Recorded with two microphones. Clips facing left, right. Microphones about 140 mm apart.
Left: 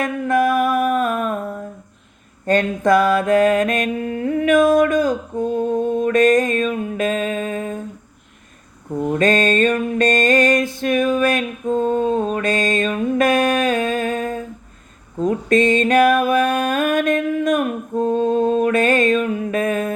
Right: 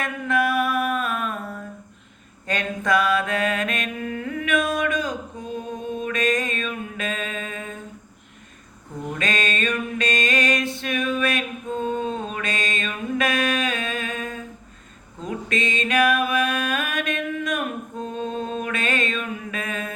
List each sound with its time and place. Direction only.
0.0 s music: 45° left (ahead or behind)
2.5 s mantra: 45° left (ahead or behind)
6.8 s music: 40° left (ahead or behind)
9.0 s music: 45° left (ahead or behind)
15.2 s mantra: 45° left (ahead or behind)